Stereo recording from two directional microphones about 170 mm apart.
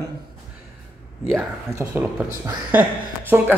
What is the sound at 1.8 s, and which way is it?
Speech, 15° right (ahead or behind).